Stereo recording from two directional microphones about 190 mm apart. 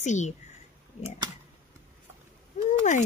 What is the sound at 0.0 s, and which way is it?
Speech, 40° left (ahead or behind).